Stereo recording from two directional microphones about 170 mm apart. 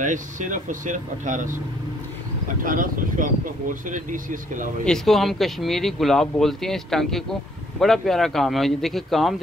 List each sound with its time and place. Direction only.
0.0 s speech: 50° right (ahead or behind)
2.6 s speech: 55° right (ahead or behind)
4.8 s speech: centre (ahead or behind)